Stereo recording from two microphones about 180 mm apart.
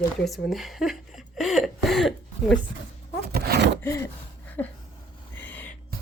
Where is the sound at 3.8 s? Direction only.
15° left (ahead or behind).